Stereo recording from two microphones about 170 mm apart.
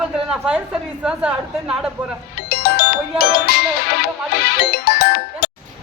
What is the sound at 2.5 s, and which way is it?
Music, 65° left (ahead or behind).